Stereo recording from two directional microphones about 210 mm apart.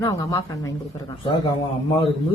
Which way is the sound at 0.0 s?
20° left (ahead or behind).